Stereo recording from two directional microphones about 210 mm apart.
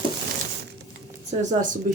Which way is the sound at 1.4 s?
35° right (ahead or behind).